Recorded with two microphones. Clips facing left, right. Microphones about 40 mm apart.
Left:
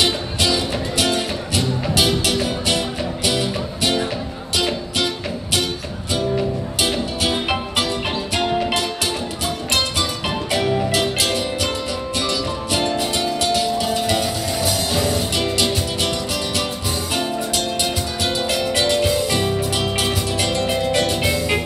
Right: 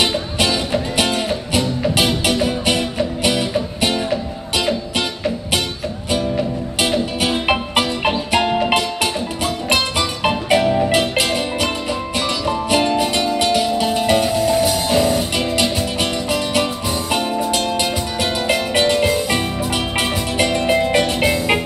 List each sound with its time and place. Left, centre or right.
0.4 s music: right
1.0 s music: centre
4.1 s music: centre
7.2 s music: right
12.3 s music: right
14.5 s music: centre
15.6 s music: right